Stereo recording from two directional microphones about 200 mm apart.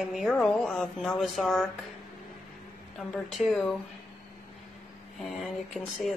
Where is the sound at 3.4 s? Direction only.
5° right (ahead or behind).